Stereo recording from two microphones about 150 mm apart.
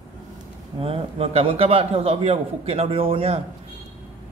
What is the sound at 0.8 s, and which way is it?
A man's voice, 40° right (ahead or behind).